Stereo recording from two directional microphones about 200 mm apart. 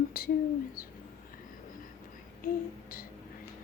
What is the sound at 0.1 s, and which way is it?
Speech, 45° left (ahead or behind).